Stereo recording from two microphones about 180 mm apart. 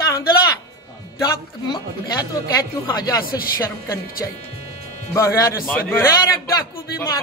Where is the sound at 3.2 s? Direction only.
55° left (ahead or behind).